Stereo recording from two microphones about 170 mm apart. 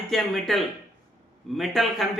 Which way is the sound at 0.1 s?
Centre (ahead or behind).